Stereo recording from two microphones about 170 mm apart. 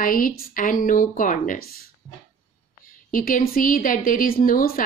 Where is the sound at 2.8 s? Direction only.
55° left (ahead or behind).